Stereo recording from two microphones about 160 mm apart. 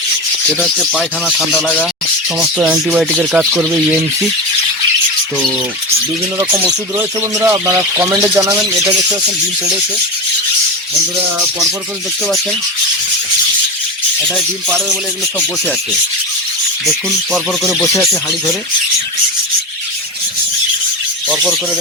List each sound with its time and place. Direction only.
0.6 s speech: centre (ahead or behind)
1.6 s speech: 5° left (ahead or behind)
2.6 s speech: 5° right (ahead or behind)
7.3 s speech: 15° right (ahead or behind)
16.8 s speech: centre (ahead or behind)
21.2 s a sound: centre (ahead or behind)